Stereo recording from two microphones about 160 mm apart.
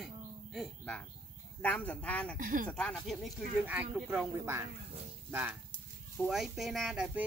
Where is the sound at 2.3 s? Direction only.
60° right (ahead or behind).